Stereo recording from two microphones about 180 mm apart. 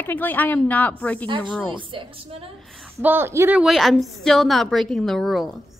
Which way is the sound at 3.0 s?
10° right (ahead or behind).